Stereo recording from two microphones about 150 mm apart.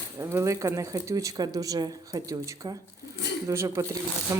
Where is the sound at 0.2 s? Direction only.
20° right (ahead or behind).